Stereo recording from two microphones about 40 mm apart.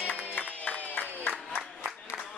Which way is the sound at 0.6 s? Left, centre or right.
Left.